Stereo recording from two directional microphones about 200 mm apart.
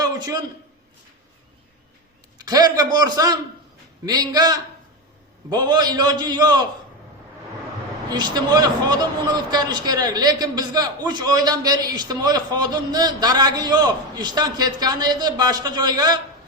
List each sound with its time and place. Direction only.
0.0 s a sound: 20° right (ahead or behind)
2.4 s speech: 20° right (ahead or behind)
8.1 s speech: 20° right (ahead or behind)